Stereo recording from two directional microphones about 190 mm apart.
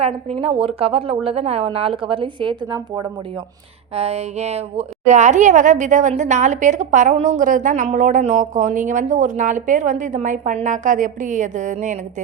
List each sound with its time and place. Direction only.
0.0 s a woman's voice: 30° right (ahead or behind)